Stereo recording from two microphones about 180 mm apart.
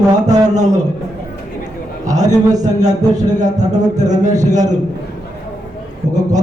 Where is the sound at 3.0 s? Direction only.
20° right (ahead or behind).